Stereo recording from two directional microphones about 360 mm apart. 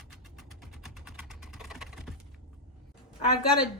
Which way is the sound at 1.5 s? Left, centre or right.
Centre.